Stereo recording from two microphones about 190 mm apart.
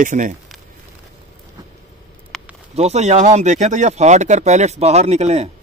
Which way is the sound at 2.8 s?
35° right (ahead or behind).